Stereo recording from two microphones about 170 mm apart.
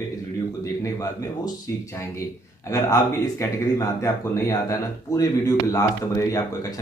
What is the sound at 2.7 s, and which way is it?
Speech, 20° left (ahead or behind).